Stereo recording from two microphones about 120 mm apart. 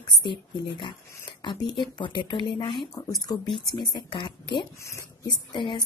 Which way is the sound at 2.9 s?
30° left (ahead or behind).